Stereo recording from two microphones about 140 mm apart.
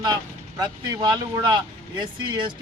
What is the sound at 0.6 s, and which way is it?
A man's voice, 30° right (ahead or behind).